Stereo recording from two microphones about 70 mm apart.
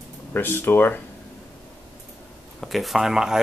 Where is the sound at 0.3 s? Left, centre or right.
Left.